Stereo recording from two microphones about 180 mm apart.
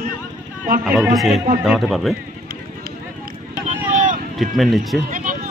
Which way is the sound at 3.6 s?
45° right (ahead or behind).